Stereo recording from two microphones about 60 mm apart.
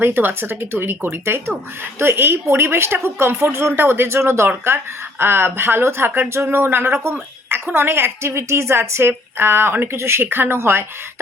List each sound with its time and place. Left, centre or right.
0.0 s speech: right